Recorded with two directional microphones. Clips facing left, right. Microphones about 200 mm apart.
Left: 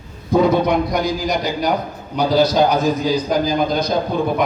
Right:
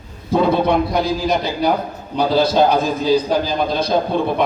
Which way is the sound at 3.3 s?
30° right (ahead or behind).